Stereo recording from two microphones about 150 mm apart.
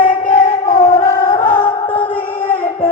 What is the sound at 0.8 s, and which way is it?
Music, 20° left (ahead or behind).